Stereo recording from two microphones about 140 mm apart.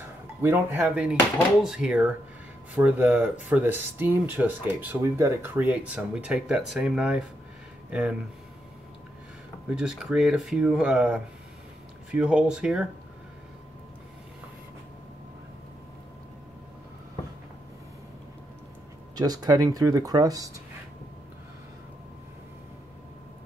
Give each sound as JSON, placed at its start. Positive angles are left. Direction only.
{"t": 0.4, "sound": "speech", "side_deg": -15}
{"t": 9.7, "sound": "speech", "side_deg": -5}
{"t": 19.1, "sound": "speech", "side_deg": -25}